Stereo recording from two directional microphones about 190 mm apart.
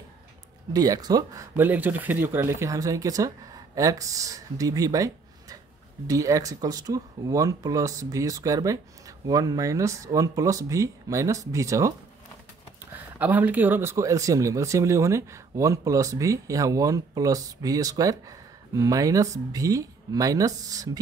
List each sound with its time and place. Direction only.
0.7 s speech: 20° right (ahead or behind)
13.2 s speech: 10° right (ahead or behind)